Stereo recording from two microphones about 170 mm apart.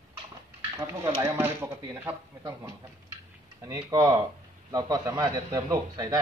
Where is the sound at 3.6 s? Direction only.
20° right (ahead or behind).